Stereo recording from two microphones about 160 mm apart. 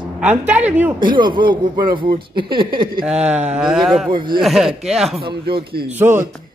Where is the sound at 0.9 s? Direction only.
30° right (ahead or behind).